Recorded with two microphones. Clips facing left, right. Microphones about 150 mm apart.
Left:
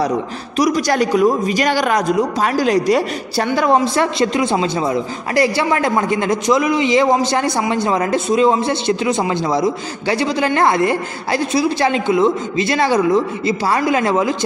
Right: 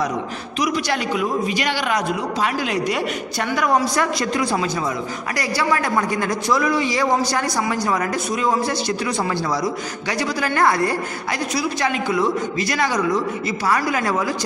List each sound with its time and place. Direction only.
0.6 s a man's voice: 40° left (ahead or behind)
3.4 s a man's voice: 25° left (ahead or behind)